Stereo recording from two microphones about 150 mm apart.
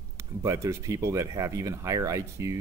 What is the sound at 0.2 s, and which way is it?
Speech, 20° right (ahead or behind).